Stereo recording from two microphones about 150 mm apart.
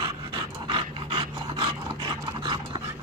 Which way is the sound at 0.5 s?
30° right (ahead or behind).